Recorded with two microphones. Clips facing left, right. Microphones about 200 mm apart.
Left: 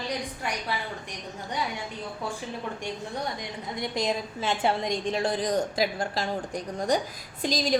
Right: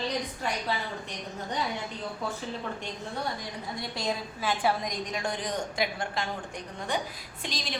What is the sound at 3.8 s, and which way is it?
A woman's voice, 20° left (ahead or behind).